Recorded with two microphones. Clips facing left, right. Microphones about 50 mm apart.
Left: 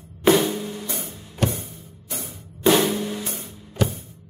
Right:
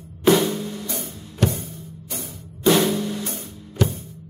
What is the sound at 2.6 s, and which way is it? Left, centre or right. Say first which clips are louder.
Drum: even; centre.